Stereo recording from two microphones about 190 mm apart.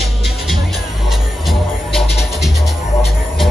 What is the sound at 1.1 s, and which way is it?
Music, centre (ahead or behind).